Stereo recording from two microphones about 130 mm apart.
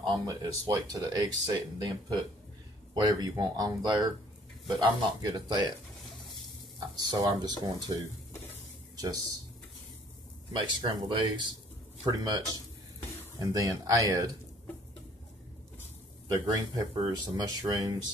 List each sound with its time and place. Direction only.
0.0 s speech: 35° right (ahead or behind)
7.0 s speech: 30° right (ahead or behind)
8.9 s a sound: 30° right (ahead or behind)
10.5 s speech: 40° right (ahead or behind)
16.3 s speech: 30° right (ahead or behind)